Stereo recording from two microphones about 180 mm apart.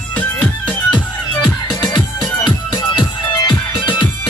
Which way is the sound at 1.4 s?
25° left (ahead or behind).